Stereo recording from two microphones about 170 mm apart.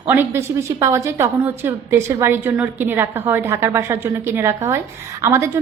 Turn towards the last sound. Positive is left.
turn(degrees=-15)  # may be behind; listen again after turning